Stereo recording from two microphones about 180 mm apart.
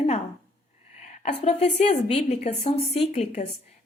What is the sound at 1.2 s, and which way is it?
A woman's voice, 40° left (ahead or behind).